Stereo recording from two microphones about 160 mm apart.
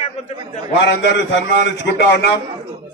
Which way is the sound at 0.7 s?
90° left.